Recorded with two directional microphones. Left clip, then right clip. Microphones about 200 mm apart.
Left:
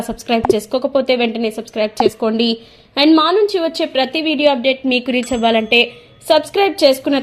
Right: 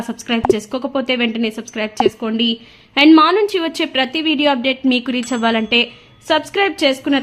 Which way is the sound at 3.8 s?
10° right (ahead or behind).